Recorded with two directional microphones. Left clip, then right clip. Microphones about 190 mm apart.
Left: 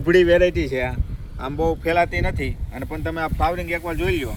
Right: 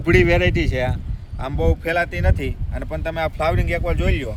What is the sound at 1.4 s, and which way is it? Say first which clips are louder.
Speech: even; 35° right (ahead or behind).